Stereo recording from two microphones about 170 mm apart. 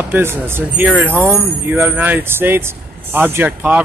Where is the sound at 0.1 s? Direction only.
15° right (ahead or behind).